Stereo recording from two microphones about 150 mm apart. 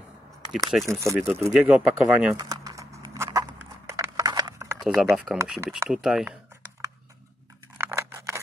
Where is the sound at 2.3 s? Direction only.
25° right (ahead or behind).